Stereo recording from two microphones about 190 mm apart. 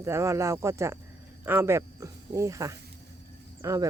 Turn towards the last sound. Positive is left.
turn(degrees=-15)  # may be behind; listen again after turning